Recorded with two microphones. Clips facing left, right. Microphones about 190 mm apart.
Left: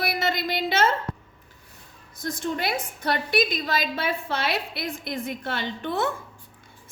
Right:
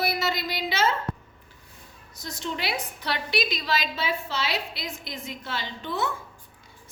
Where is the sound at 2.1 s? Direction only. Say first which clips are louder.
Left 5 dB; 50° left (ahead or behind).